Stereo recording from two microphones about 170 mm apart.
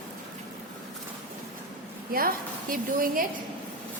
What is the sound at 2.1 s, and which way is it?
A woman's voice, 60° right (ahead or behind).